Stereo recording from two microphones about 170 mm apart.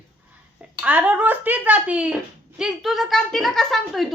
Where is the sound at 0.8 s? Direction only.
10° right (ahead or behind).